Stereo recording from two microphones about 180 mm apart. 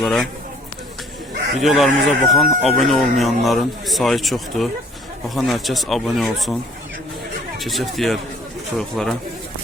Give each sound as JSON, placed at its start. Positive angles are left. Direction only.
{"t": 0.0, "sound": "speech", "side_deg": 0}
{"t": 1.6, "sound": "speech", "side_deg": 0}
{"t": 7.6, "sound": "speech", "side_deg": 0}